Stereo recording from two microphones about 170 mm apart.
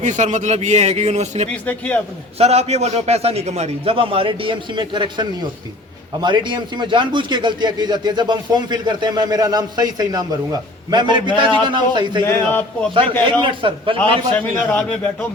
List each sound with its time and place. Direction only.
0.0 s a man's voice: 45° right (ahead or behind)
1.6 s a man's voice: 10° left (ahead or behind)
2.4 s a man's voice: 40° right (ahead or behind)
12.2 s a man's voice: 10° left (ahead or behind)
13.4 s a man's voice: 30° right (ahead or behind)
14.0 s a man's voice: 10° left (ahead or behind)